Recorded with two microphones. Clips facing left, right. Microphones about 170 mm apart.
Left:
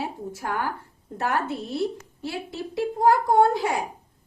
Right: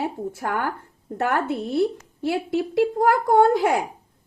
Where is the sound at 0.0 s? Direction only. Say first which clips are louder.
Right 4 dB; 55° right (ahead or behind).